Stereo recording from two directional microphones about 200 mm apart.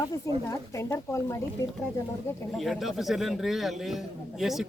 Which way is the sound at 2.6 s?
Centre (ahead or behind).